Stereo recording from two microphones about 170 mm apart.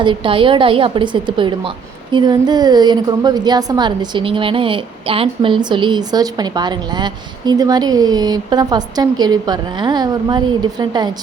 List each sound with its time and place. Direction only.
0.0 s a woman's voice: 30° right (ahead or behind)